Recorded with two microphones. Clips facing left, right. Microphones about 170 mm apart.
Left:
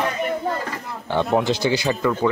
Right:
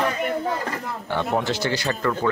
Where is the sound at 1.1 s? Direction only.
15° left (ahead or behind).